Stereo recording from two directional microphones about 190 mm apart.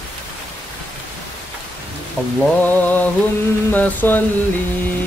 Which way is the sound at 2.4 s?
10° left (ahead or behind).